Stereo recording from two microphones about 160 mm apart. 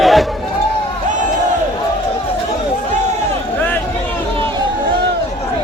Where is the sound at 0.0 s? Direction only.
Centre (ahead or behind).